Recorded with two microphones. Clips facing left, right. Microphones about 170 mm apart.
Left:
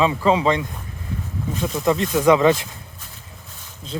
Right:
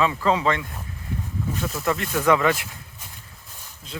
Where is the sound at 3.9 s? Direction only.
30° left (ahead or behind).